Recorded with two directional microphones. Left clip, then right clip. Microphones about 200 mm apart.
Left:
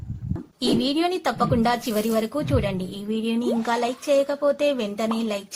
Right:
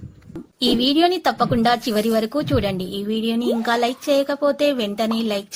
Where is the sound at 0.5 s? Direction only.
25° right (ahead or behind).